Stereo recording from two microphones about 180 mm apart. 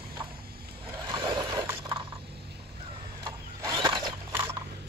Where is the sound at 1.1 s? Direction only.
20° right (ahead or behind).